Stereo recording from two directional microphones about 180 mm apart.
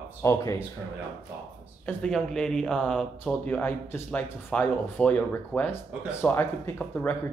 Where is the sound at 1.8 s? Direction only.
5° left (ahead or behind).